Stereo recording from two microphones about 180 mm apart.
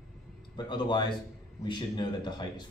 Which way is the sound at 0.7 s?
25° left (ahead or behind).